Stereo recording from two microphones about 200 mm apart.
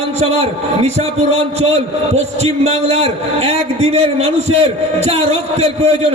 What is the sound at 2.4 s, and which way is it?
A man's voice, 30° right (ahead or behind).